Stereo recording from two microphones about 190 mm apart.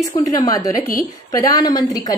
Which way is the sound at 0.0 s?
20° left (ahead or behind).